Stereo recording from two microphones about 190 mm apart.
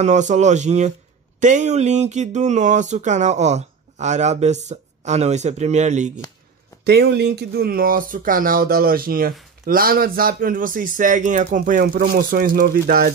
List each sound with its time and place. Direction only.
0.0 s speech: 40° right (ahead or behind)
6.8 s speech: 60° right (ahead or behind)